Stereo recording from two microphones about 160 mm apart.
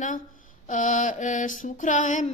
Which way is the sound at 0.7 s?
50° left (ahead or behind).